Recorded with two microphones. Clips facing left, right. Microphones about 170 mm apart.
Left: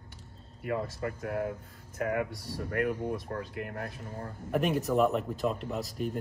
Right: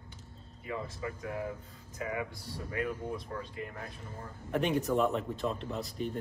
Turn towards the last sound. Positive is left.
turn(degrees=5)  # may be behind; listen again after turning